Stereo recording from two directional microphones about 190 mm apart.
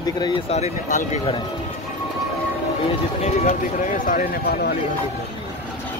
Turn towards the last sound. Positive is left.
turn(degrees=55)  # may be behind; listen again after turning